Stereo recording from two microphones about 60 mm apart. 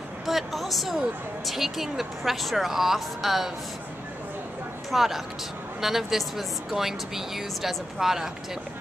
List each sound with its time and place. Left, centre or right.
0.3 s a woman's voice: centre
4.9 s a woman's voice: centre